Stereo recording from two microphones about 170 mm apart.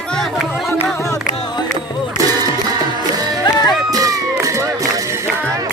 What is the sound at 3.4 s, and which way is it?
Music, 25° left (ahead or behind).